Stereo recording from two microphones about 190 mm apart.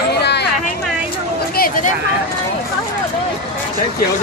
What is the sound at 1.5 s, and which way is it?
Speech, 50° left (ahead or behind).